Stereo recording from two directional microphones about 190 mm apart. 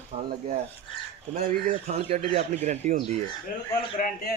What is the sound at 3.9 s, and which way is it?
Speech, 50° left (ahead or behind).